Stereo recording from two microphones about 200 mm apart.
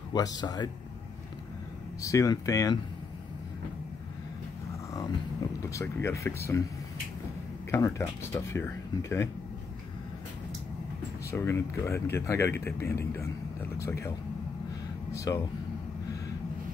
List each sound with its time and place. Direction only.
0.1 s speech: 20° left (ahead or behind)
2.0 s speech: 15° left (ahead or behind)
5.6 s speech: 15° left (ahead or behind)
7.7 s speech: 15° left (ahead or behind)
11.2 s speech: 15° left (ahead or behind)
15.1 s speech: 20° left (ahead or behind)